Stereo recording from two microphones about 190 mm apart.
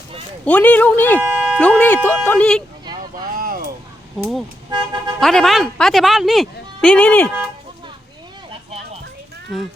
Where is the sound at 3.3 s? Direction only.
50° right (ahead or behind).